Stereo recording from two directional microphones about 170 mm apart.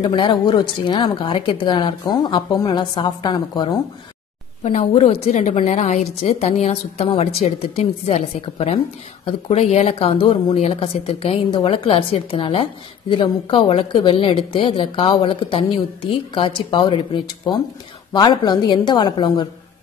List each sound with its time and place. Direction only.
0.0 s speech: 30° left (ahead or behind)
4.6 s a woman's voice: 40° left (ahead or behind)